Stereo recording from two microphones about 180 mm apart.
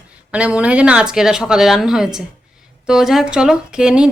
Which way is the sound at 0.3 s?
5° right (ahead or behind).